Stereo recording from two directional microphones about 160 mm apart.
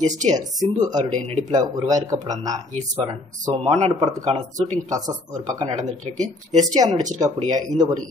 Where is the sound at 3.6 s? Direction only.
40° right (ahead or behind).